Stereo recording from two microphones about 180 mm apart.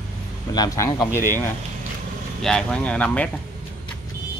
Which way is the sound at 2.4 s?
5° left (ahead or behind).